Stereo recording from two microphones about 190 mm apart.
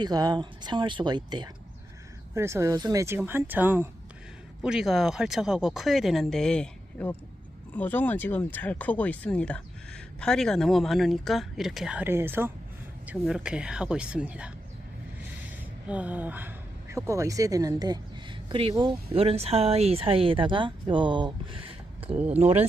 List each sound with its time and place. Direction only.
0.0 s speech: 20° right (ahead or behind)
15.9 s a woman's voice: 5° right (ahead or behind); by 22.6 s 35° right (ahead or behind)